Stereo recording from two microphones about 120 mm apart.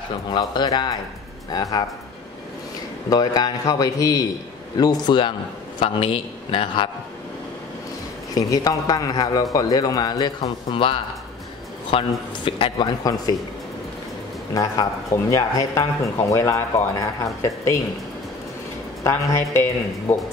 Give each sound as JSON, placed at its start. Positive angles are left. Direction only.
{"t": 0.3, "sound": "speech", "side_deg": 35}
{"t": 3.1, "sound": "a man's voice", "side_deg": 35}
{"t": 8.4, "sound": "speech", "side_deg": 30}
{"t": 10.7, "sound": "a man's voice", "side_deg": 45}
{"t": 14.5, "sound": "speech", "side_deg": 30}
{"t": 19.0, "sound": "speech", "side_deg": 25}